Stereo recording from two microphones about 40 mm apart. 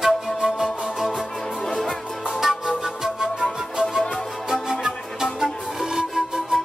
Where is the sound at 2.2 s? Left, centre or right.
Centre.